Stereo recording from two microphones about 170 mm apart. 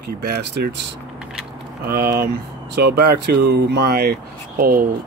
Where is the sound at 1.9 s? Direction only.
65° right (ahead or behind).